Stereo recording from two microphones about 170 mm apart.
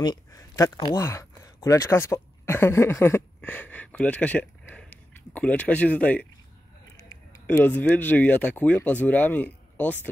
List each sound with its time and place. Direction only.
0.0 s speech: 25° left (ahead or behind)
7.4 s speech: 10° left (ahead or behind)